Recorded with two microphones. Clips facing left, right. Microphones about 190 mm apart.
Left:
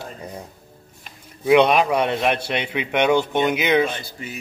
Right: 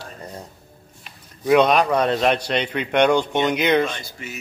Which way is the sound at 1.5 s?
5° left (ahead or behind).